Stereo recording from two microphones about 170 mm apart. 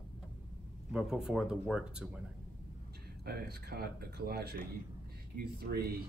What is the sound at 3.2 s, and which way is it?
Speech, 65° right (ahead or behind).